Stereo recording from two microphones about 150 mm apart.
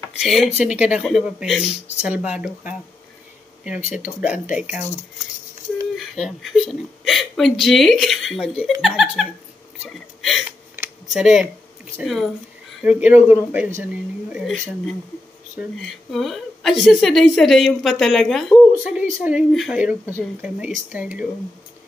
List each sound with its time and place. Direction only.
0.2 s a woman's voice: centre (ahead or behind)
3.9 s speech: 10° right (ahead or behind)
5.9 s a woman's voice: centre (ahead or behind)
11.1 s a sound: 5° right (ahead or behind)
12.0 s a woman's voice: centre (ahead or behind)
12.8 s speech: 10° right (ahead or behind)
14.3 s a woman's voice: 5° right (ahead or behind)
15.8 s a woman's voice: centre (ahead or behind)